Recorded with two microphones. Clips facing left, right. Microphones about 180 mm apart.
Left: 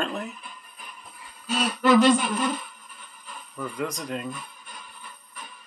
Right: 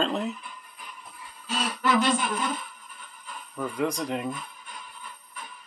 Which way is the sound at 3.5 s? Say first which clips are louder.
Right 3 dB; 15° right (ahead or behind).